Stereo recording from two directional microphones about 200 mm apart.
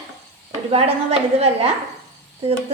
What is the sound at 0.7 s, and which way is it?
A woman's voice, 30° right (ahead or behind).